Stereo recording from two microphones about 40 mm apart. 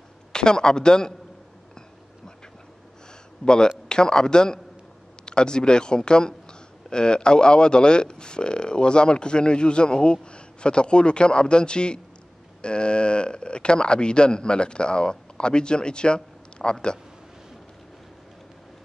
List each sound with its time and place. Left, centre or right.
0.3 s a man's voice: centre
3.4 s speech: centre